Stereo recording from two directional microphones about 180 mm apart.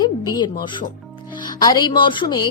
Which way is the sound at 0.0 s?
25° left (ahead or behind).